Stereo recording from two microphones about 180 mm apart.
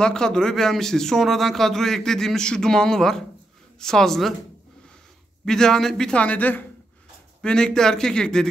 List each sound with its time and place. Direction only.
0.0 s speech: 5° left (ahead or behind)
5.4 s speech: 5° left (ahead or behind)